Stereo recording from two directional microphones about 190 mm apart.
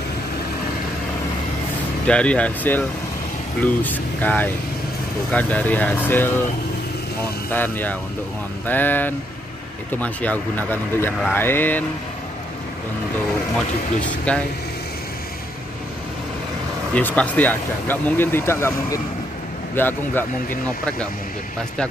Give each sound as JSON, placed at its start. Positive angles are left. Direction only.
{"t": 2.0, "sound": "speech", "side_deg": 5}
{"t": 7.5, "sound": "speech", "side_deg": 10}
{"t": 14.0, "sound": "speech", "side_deg": 5}
{"t": 16.9, "sound": "speech", "side_deg": 5}